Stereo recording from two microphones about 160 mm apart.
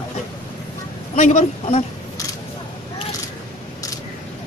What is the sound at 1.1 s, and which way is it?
Speech, 45° left (ahead or behind).